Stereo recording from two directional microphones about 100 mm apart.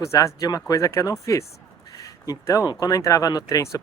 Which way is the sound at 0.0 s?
30° left (ahead or behind).